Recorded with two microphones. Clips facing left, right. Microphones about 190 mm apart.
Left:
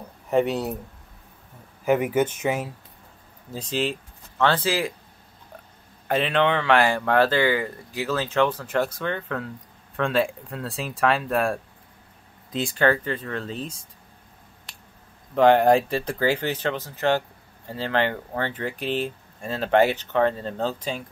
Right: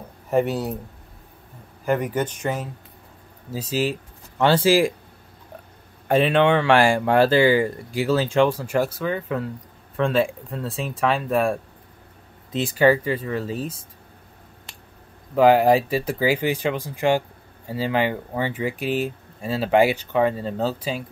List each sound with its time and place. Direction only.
0.3 s speech: centre (ahead or behind)
1.9 s speech: 10° left (ahead or behind)
3.5 s speech: 5° right (ahead or behind)
6.2 s speech: 10° right (ahead or behind)
15.3 s speech: 5° right (ahead or behind)